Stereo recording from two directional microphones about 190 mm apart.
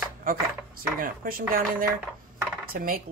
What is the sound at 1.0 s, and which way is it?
A woman's voice, 50° right (ahead or behind).